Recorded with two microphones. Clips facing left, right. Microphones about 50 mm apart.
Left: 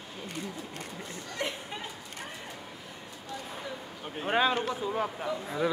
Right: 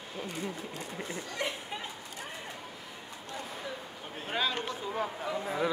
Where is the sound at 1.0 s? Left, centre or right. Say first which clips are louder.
Even; centre.